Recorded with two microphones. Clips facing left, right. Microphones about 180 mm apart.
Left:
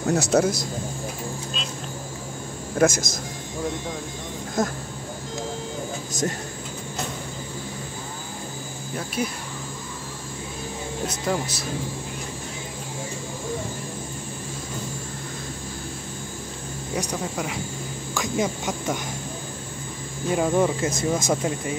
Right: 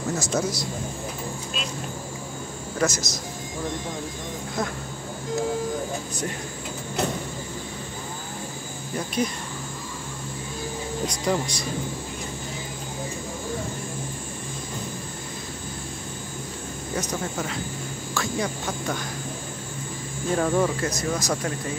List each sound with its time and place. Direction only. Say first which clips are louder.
0.1 s speech: left 7 dB; 70° left (ahead or behind)
2.8 s speech: left 5 dB; 50° left (ahead or behind)
4.6 s speech: left 4 dB; 45° left (ahead or behind)
8.9 s speech: right 2 dB; 5° left (ahead or behind)
11.1 s speech: right 1 dB; 5° left (ahead or behind)
18.1 s speech: left 3 dB; 20° left (ahead or behind)
20.2 s speech: left 1 dB; 15° left (ahead or behind)